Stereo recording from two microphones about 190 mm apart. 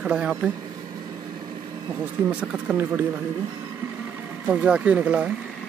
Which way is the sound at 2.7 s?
5° right (ahead or behind).